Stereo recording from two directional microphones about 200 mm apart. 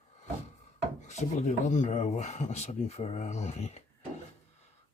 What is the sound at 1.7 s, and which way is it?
Speech, 35° left (ahead or behind).